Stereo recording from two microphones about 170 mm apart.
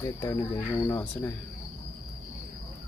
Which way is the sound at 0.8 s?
15° left (ahead or behind).